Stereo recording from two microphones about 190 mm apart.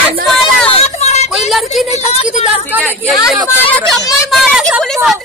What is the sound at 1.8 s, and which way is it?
Speech, 35° left (ahead or behind).